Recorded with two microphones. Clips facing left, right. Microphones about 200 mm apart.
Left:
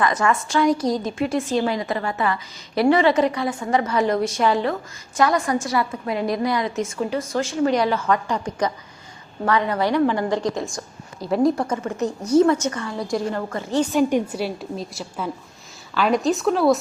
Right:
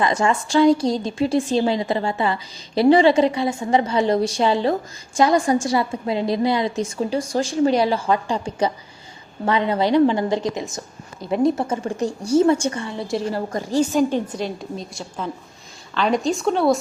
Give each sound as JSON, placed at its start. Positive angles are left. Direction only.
{"t": 0.0, "sound": "a woman's voice", "side_deg": -25}
{"t": 12.0, "sound": "a woman's voice", "side_deg": -10}
{"t": 12.4, "sound": "a woman's voice", "side_deg": -30}
{"t": 14.1, "sound": "a woman's voice", "side_deg": 10}